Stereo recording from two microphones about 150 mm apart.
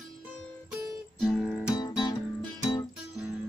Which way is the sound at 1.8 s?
30° left (ahead or behind).